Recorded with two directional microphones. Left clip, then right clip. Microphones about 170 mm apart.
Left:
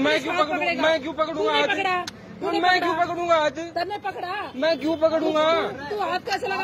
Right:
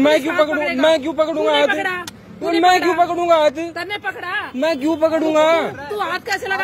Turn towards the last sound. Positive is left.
turn(degrees=-50)  # may be behind; listen again after turning